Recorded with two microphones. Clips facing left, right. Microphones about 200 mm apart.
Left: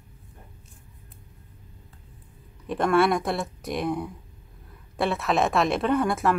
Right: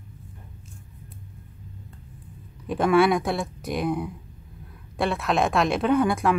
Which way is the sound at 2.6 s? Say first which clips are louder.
Right 2 dB; centre (ahead or behind).